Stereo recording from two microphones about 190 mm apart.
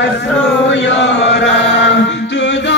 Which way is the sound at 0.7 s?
70° left (ahead or behind).